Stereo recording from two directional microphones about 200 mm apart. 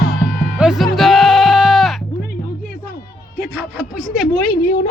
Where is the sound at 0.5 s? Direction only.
5° right (ahead or behind).